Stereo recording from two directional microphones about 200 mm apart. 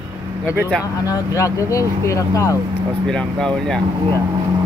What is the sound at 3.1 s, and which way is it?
Speech, 5° left (ahead or behind).